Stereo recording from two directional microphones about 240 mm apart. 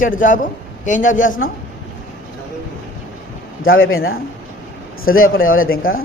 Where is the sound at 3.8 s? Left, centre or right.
Left.